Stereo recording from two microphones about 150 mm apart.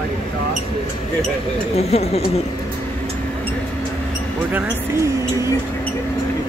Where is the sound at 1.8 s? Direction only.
45° left (ahead or behind).